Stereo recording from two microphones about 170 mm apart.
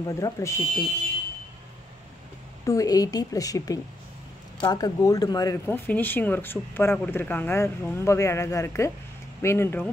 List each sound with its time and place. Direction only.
0.0 s a woman's voice: 20° left (ahead or behind)
2.6 s a woman's voice: 20° left (ahead or behind)